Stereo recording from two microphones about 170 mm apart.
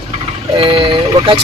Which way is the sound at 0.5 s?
30° right (ahead or behind).